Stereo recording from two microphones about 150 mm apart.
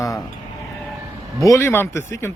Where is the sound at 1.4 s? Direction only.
20° left (ahead or behind).